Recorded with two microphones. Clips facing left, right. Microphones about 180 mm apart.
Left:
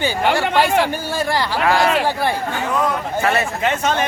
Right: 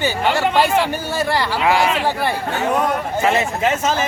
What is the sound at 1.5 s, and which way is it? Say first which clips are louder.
Speech: left 1 dB; 15° right (ahead or behind).